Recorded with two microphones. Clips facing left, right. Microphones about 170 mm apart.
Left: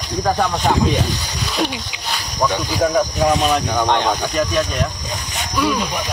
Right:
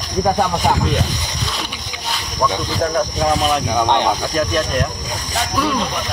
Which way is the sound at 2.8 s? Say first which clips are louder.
Left 2 dB; 5° left (ahead or behind).